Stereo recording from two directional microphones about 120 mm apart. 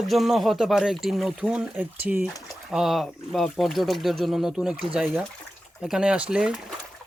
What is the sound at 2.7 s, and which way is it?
Speech, centre (ahead or behind).